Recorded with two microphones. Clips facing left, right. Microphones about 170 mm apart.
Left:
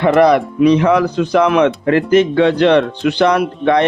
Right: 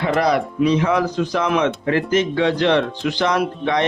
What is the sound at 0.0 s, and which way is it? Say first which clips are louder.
Speech: left 7 dB; 65° left (ahead or behind).